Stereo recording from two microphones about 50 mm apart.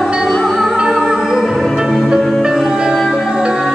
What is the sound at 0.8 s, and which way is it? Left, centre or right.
Music, centre.